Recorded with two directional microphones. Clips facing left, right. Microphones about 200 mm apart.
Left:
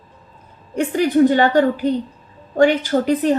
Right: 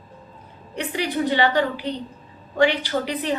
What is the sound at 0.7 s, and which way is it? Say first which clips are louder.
A woman's voice: left 9 dB; 45° left (ahead or behind).